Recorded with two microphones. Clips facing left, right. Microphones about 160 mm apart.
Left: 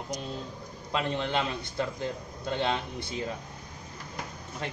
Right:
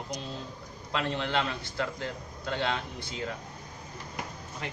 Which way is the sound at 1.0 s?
15° left (ahead or behind).